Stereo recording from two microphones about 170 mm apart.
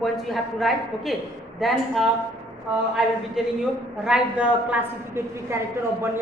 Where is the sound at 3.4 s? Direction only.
5° right (ahead or behind).